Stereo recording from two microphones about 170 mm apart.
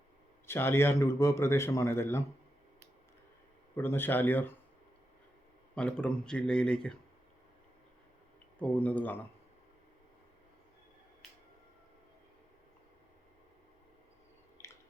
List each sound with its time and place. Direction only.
0.4 s a man's voice: 15° left (ahead or behind)
3.8 s a man's voice: 10° left (ahead or behind)
5.7 s speech: 5° left (ahead or behind)
8.5 s a man's voice: 10° left (ahead or behind)